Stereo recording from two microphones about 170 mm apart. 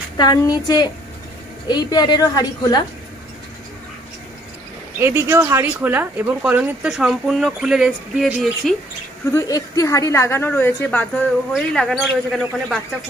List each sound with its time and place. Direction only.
0.2 s a woman's voice: 25° left (ahead or behind)
5.0 s speech: 15° right (ahead or behind)
9.3 s a woman's voice: 20° left (ahead or behind); by 12.7 s centre (ahead or behind)